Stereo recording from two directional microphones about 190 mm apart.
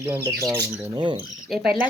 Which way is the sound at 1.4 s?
Centre (ahead or behind).